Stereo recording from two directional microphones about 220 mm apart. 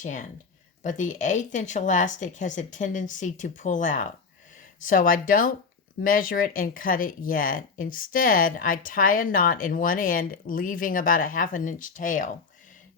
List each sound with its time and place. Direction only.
0.0 s speech: 35° left (ahead or behind)